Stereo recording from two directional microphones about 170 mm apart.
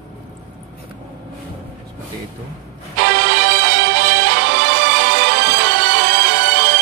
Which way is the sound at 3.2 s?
70° right (ahead or behind).